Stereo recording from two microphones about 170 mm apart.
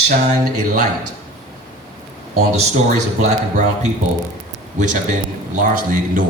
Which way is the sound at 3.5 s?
45° right (ahead or behind).